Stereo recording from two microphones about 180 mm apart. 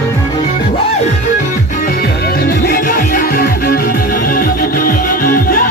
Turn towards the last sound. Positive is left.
turn(degrees=55)  # may be behind; listen again after turning